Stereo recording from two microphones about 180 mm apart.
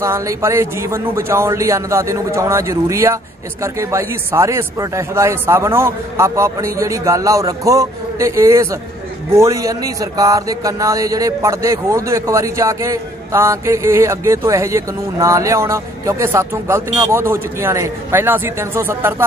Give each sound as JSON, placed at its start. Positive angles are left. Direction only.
{"t": 0.0, "sound": "speech", "side_deg": -15}